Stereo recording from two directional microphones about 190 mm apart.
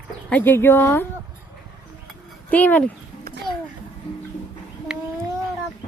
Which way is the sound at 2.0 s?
10° left (ahead or behind).